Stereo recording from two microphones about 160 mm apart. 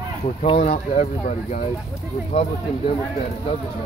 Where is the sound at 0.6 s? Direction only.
45° left (ahead or behind).